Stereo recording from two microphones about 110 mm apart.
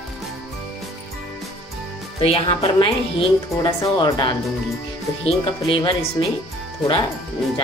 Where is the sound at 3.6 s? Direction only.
40° left (ahead or behind).